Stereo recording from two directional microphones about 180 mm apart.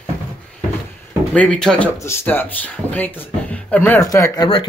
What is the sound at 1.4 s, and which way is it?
Speech, 5° left (ahead or behind).